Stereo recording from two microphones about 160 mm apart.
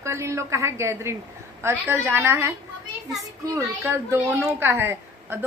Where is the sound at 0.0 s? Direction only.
15° right (ahead or behind).